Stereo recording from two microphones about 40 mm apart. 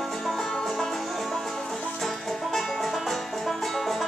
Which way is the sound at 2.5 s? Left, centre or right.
Centre.